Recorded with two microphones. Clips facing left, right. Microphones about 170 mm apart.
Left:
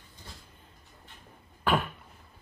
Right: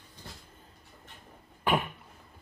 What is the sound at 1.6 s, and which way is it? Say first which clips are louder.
Cough: left 1 dB; 15° right (ahead or behind).